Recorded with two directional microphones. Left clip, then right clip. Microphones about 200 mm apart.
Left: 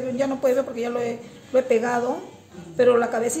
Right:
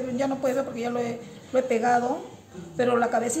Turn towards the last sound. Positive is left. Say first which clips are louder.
# left 3 dB
turn(degrees=30)  # may be behind; listen again after turning